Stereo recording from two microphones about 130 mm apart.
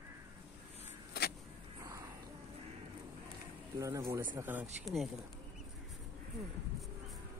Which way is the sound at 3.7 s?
25° right (ahead or behind).